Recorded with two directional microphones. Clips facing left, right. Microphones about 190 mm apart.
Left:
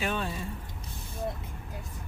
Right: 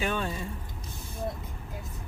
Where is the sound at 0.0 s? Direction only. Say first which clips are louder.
Right 1 dB; 5° left (ahead or behind).